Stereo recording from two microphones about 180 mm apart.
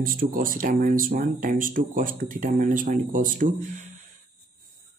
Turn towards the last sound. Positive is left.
turn(degrees=-45)  # may be behind; listen again after turning